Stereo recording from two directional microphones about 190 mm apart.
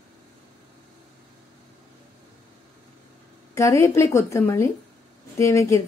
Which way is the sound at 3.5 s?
15° left (ahead or behind).